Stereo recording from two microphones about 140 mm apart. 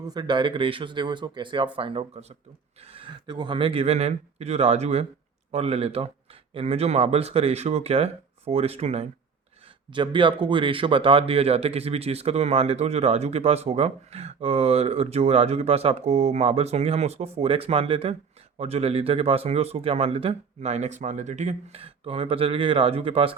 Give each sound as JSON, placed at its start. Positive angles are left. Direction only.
{"t": 0.0, "sound": "speech", "side_deg": -30}
{"t": 9.9, "sound": "speech", "side_deg": -35}